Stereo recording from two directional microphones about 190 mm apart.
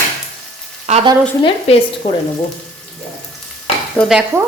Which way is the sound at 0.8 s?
35° right (ahead or behind).